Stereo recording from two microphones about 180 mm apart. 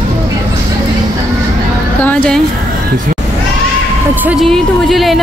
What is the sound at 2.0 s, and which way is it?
Speech, 5° left (ahead or behind).